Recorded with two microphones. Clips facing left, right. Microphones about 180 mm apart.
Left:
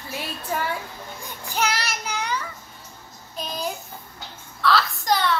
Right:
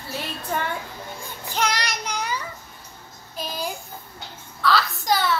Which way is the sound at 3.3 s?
5° right (ahead or behind).